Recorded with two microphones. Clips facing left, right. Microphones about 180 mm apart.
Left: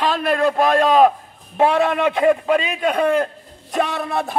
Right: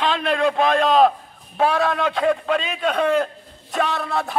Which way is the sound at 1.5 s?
20° left (ahead or behind).